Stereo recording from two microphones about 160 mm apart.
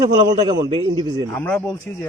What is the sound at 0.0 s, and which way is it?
A man's voice, 25° right (ahead or behind).